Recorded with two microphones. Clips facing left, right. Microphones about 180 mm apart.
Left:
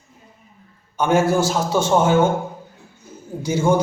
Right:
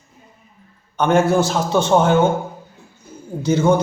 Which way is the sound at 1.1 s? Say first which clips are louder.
Right 2 dB; 60° right (ahead or behind).